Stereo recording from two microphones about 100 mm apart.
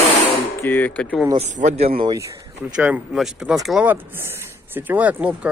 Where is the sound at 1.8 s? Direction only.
75° right (ahead or behind).